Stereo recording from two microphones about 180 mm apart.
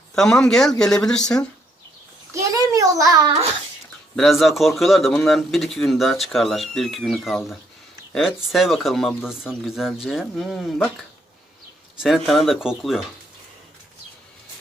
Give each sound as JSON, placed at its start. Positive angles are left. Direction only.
{"t": 0.2, "sound": "speech", "side_deg": 0}
{"t": 2.3, "sound": "a sound", "side_deg": -20}
{"t": 4.1, "sound": "speech", "side_deg": 0}
{"t": 11.9, "sound": "speech", "side_deg": 0}